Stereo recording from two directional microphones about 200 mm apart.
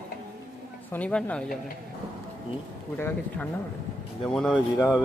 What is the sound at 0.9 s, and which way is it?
Speech, 5° left (ahead or behind).